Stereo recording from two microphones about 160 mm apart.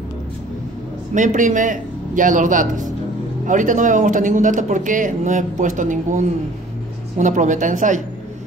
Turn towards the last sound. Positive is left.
turn(degrees=-50)  # may be behind; listen again after turning